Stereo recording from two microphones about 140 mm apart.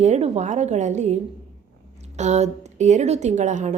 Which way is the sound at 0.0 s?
50° right (ahead or behind).